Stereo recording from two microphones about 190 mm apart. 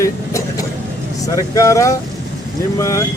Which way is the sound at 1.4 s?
15° left (ahead or behind).